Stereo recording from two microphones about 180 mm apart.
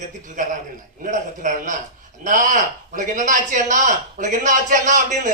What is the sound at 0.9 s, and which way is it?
A man's voice, 45° right (ahead or behind).